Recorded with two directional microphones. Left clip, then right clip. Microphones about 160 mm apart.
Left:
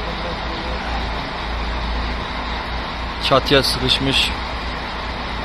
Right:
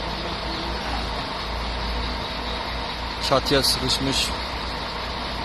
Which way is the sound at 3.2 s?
Centre (ahead or behind).